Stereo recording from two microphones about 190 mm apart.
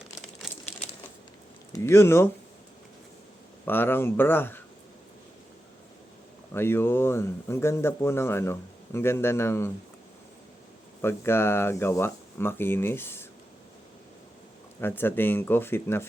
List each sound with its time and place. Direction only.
0.4 s crumpling: centre (ahead or behind)
1.7 s speech: 15° left (ahead or behind)
3.7 s speech: 10° left (ahead or behind)
6.5 s speech: 10° left (ahead or behind)
11.0 s speech: 10° left (ahead or behind)
14.8 s speech: 10° left (ahead or behind)